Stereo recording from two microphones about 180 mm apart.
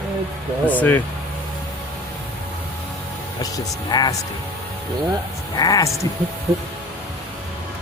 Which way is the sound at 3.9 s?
20° left (ahead or behind).